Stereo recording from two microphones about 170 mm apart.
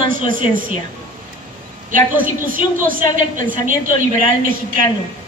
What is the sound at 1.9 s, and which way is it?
A woman's voice, 50° right (ahead or behind).